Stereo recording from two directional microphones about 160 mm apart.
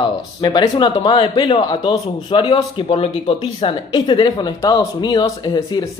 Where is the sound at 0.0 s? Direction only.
25° left (ahead or behind).